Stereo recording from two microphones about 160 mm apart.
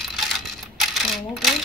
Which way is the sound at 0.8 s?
Centre (ahead or behind).